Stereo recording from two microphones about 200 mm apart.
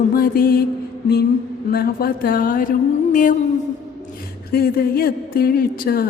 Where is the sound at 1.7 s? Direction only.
50° left (ahead or behind).